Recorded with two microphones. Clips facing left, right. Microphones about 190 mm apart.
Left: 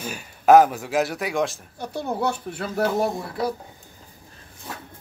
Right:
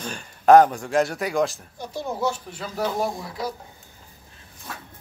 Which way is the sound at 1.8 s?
60° left (ahead or behind).